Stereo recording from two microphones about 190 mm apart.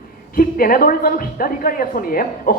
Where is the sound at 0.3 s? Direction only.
50° left (ahead or behind).